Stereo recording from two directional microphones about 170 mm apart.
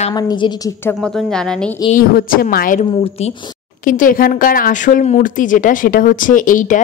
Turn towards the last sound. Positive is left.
turn(degrees=50)  # may be behind; listen again after turning